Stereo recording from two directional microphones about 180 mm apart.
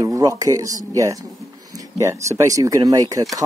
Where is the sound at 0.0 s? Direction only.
20° right (ahead or behind).